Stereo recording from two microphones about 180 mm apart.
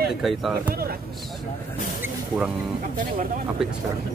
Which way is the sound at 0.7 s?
55° right (ahead or behind).